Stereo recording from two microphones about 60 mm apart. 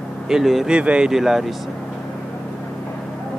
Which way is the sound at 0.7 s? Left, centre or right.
Centre.